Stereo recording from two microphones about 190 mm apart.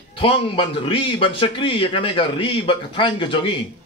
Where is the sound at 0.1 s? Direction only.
30° left (ahead or behind).